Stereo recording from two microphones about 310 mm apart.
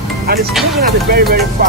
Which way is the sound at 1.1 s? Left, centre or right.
Right.